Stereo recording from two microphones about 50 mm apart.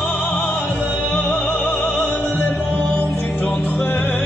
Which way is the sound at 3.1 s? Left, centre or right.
Left.